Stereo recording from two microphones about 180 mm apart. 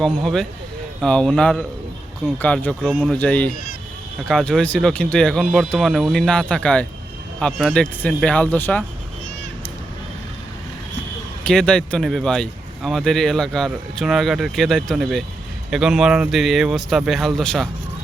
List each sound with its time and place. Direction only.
0.0 s speech: centre (ahead or behind)
11.4 s speech: 5° left (ahead or behind)